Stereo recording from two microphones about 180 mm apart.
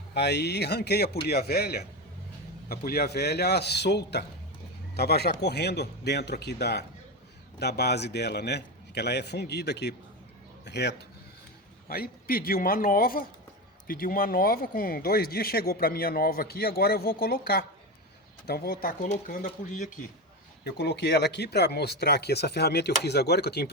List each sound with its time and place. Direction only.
0.1 s a man's voice: 65° left (ahead or behind)
11.9 s a man's voice: 55° left (ahead or behind)
20.7 s speech: 65° left (ahead or behind)